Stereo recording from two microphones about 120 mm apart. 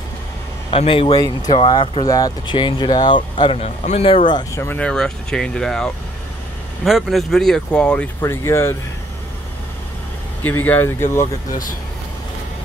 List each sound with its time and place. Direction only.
0.7 s speech: 50° left (ahead or behind)
1.1 s speech: 30° left (ahead or behind)
1.7 s speech: 45° left (ahead or behind)
2.0 s speech: 30° left (ahead or behind)
3.6 s speech: 65° left (ahead or behind)
4.7 s speech: 5° left (ahead or behind)
8.2 s speech: 20° left (ahead or behind)
10.4 s speech: 15° left (ahead or behind)